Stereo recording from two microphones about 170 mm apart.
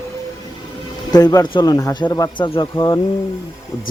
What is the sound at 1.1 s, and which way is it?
Speech, 20° left (ahead or behind).